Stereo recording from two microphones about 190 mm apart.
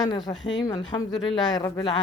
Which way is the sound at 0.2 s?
Centre (ahead or behind).